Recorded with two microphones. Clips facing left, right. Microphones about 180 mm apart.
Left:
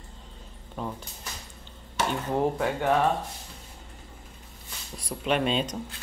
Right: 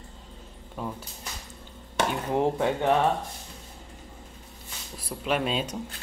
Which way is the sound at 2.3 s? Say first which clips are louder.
Right 2 dB; 20° right (ahead or behind).